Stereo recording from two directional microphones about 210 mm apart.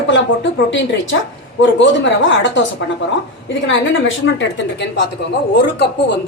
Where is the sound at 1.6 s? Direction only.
60° left (ahead or behind).